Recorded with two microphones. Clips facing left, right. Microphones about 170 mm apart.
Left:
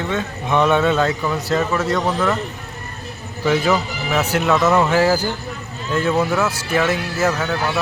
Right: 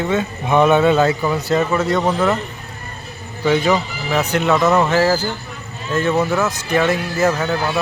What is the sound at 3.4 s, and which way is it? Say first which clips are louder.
A man's voice: right 1 dB; 5° left (ahead or behind).